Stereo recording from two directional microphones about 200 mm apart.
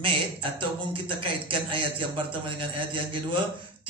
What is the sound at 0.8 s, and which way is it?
A man's voice, 25° right (ahead or behind).